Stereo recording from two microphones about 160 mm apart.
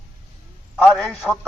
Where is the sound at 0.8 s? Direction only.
Centre (ahead or behind).